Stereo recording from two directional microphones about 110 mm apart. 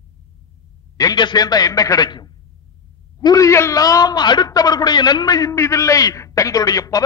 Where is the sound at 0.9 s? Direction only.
40° left (ahead or behind).